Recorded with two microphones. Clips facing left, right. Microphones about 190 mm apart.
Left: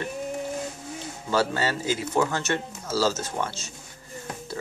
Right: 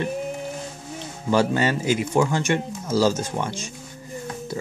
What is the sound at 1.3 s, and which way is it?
Speech, 15° right (ahead or behind).